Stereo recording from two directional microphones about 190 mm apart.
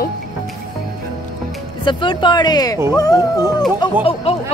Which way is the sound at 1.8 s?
25° left (ahead or behind).